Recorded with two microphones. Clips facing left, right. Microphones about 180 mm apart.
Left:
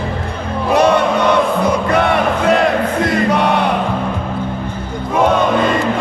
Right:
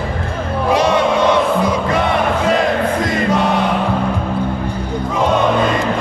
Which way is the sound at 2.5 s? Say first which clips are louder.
Left 3 dB; 65° left (ahead or behind).